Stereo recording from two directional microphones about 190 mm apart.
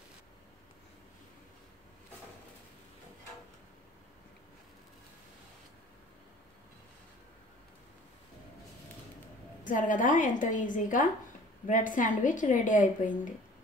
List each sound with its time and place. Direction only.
9.7 s a woman's voice: 45° left (ahead or behind)